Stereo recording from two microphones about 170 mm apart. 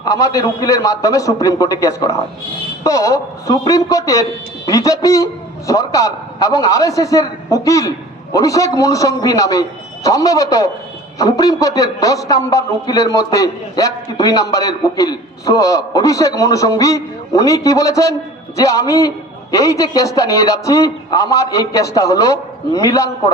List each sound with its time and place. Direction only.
0.0 s a man's voice: 20° left (ahead or behind)